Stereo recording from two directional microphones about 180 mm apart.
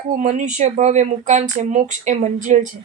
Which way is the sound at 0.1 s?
40° right (ahead or behind).